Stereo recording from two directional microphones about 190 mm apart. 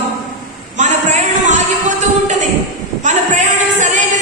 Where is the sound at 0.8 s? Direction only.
40° right (ahead or behind).